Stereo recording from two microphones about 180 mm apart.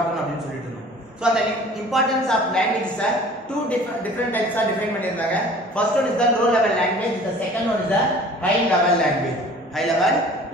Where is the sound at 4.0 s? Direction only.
10° left (ahead or behind).